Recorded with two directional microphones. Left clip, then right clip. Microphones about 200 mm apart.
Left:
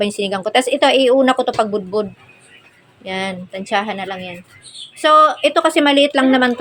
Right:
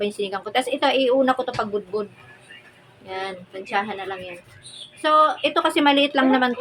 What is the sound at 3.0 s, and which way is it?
A woman's voice, 35° left (ahead or behind).